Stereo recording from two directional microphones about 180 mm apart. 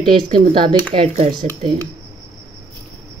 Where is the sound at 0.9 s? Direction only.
35° right (ahead or behind).